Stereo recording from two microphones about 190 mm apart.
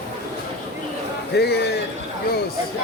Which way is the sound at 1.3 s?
60° left (ahead or behind).